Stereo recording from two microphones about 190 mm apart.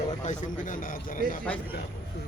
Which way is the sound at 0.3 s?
45° left (ahead or behind).